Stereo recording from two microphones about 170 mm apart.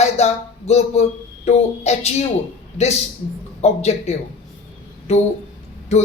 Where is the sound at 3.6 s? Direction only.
40° left (ahead or behind).